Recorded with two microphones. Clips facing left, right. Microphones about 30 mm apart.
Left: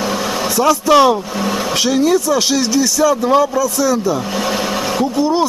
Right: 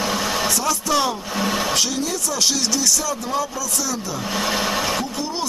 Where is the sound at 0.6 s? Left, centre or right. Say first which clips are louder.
Left 15 dB; left.